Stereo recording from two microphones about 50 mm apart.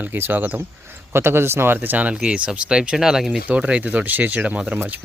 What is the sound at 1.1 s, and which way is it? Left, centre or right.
Speech, right.